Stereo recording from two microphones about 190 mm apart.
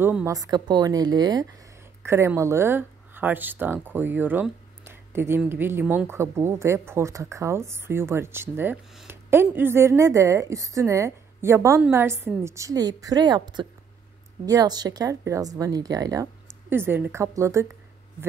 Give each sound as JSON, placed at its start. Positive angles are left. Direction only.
{"t": 0.0, "sound": "speech", "side_deg": -10}